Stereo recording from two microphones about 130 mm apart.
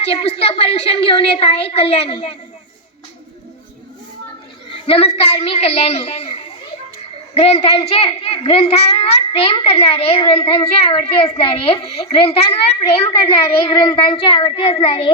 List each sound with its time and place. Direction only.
0.0 s a child's voice: 50° left (ahead or behind)
4.9 s a child's voice: 50° left (ahead or behind)
7.4 s a child's voice: 50° left (ahead or behind)